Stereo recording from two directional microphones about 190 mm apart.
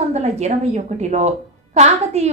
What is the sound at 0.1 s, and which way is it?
A woman's voice, 35° right (ahead or behind).